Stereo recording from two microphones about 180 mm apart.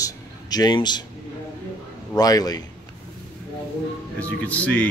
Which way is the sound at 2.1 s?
20° left (ahead or behind).